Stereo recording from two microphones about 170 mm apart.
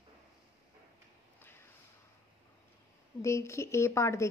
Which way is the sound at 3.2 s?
15° left (ahead or behind).